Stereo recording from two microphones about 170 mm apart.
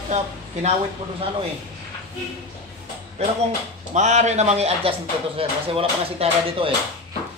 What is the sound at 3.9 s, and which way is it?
Speech, 40° right (ahead or behind).